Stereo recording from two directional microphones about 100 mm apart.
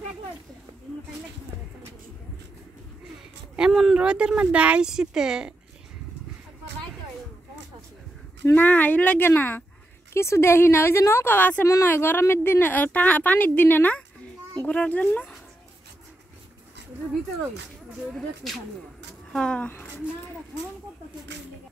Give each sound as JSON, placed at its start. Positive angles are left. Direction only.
{"t": 3.5, "sound": "a woman's voice", "side_deg": -5}
{"t": 8.5, "sound": "a woman's voice", "side_deg": 15}
{"t": 18.1, "sound": "speech", "side_deg": 0}